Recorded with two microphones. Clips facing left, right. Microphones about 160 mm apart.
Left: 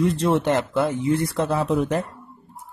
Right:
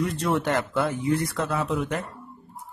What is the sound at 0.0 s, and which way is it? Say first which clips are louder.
Speech: left 5 dB; 25° left (ahead or behind).